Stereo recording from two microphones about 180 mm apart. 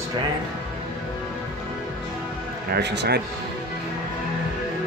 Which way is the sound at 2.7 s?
70° right (ahead or behind).